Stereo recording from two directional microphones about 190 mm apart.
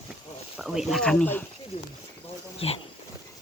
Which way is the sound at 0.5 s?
Centre (ahead or behind).